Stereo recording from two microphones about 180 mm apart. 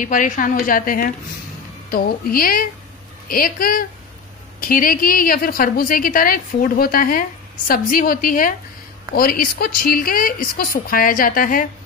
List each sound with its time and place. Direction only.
0.0 s a woman's voice: 45° left (ahead or behind)